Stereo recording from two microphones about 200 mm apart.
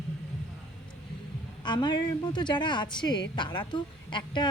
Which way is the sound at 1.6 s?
20° left (ahead or behind).